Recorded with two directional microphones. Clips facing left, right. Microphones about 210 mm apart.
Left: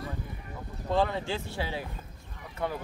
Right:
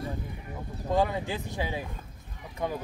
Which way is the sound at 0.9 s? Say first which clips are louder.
Right 1 dB; 10° right (ahead or behind).